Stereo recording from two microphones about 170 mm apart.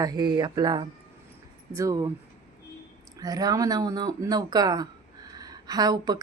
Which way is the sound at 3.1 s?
20° right (ahead or behind).